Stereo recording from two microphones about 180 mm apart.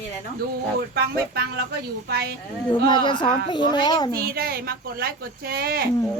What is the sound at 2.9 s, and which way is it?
Speech, 25° left (ahead or behind).